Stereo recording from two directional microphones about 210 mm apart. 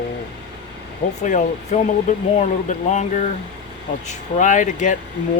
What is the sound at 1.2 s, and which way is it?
Speech, 35° left (ahead or behind).